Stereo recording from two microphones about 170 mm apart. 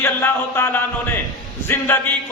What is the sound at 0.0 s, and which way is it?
A man's voice, 15° left (ahead or behind).